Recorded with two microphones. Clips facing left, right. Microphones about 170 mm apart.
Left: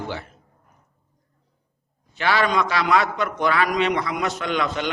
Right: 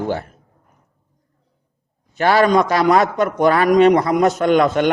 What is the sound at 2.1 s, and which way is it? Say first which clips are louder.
A man's voice: right 7 dB; 45° right (ahead or behind).